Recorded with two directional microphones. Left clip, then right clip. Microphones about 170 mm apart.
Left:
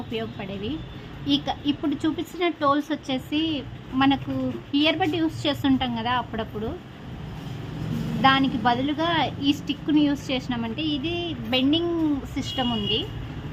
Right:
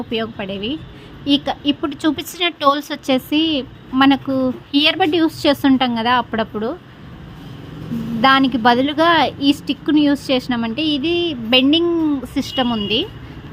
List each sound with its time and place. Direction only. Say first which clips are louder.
0.1 s a woman's voice: right 9 dB; 30° right (ahead or behind)
8.2 s a woman's voice: right 7 dB; 30° right (ahead or behind)